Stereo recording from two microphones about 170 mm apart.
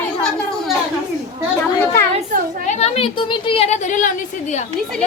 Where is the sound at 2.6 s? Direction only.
40° left (ahead or behind).